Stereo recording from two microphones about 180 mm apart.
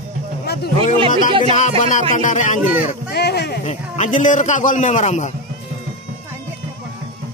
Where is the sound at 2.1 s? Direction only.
45° left (ahead or behind).